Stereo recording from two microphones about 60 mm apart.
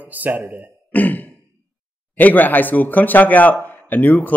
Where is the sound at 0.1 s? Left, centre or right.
Right.